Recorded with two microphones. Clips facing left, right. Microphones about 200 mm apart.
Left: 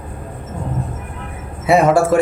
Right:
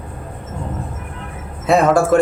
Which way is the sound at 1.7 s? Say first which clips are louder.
Even; 10° left (ahead or behind).